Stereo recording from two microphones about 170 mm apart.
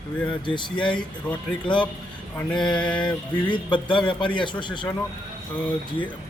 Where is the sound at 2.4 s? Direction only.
10° left (ahead or behind).